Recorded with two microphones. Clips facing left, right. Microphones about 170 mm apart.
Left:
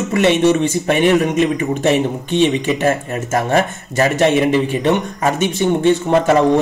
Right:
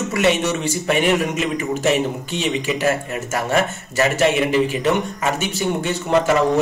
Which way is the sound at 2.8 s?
35° left (ahead or behind).